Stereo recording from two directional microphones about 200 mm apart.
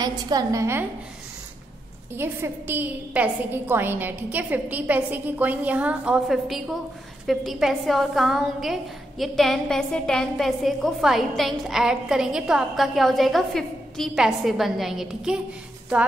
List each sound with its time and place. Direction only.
0.0 s a woman's voice: 20° right (ahead or behind)
2.1 s a woman's voice: 10° right (ahead or behind)